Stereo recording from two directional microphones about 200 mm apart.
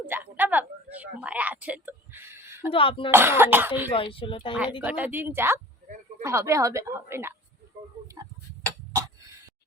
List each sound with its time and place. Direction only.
0.0 s a sound: 10° right (ahead or behind)
2.7 s speech: 25° left (ahead or behind)
3.1 s a woman's voice: 10° right (ahead or behind)
3.9 s speech: 25° left (ahead or behind)
4.8 s a woman's voice: 10° right (ahead or behind)